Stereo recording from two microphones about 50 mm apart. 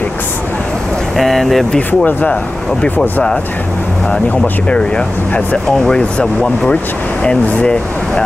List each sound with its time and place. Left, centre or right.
1.1 s speech: centre
4.6 s speech: left